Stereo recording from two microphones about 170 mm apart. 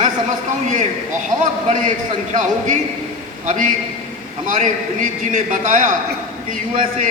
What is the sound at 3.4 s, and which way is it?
A man's voice, 50° right (ahead or behind).